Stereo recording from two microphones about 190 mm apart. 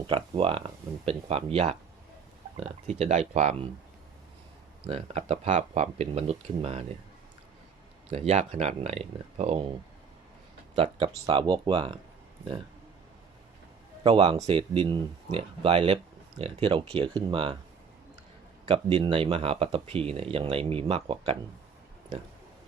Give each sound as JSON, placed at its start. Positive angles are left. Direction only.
{"t": 0.1, "sound": "speech", "side_deg": -30}
{"t": 4.9, "sound": "speech", "side_deg": -30}
{"t": 8.1, "sound": "speech", "side_deg": -35}
{"t": 10.8, "sound": "speech", "side_deg": -30}
{"t": 14.0, "sound": "speech", "side_deg": -25}
{"t": 18.6, "sound": "speech", "side_deg": -30}